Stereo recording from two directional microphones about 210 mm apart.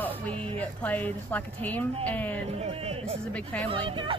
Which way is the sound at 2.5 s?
30° right (ahead or behind).